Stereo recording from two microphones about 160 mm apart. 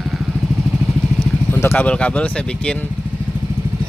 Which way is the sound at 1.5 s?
15° left (ahead or behind).